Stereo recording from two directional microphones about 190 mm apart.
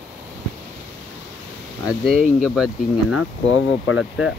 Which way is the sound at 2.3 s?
5° right (ahead or behind).